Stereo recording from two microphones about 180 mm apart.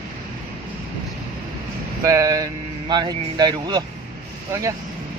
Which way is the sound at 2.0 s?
20° right (ahead or behind).